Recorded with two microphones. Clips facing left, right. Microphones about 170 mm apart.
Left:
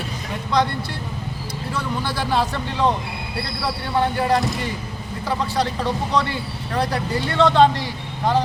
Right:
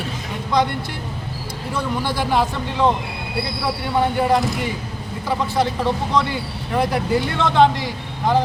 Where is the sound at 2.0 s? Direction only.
15° right (ahead or behind).